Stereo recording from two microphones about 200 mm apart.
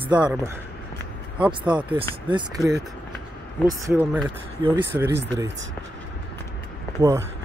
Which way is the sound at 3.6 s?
15° right (ahead or behind).